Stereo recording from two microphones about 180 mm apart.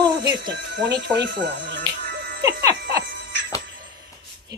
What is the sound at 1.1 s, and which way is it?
Speech, 70° right (ahead or behind).